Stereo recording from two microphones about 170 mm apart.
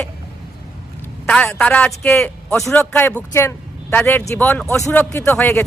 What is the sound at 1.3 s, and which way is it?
A man's voice, 10° left (ahead or behind).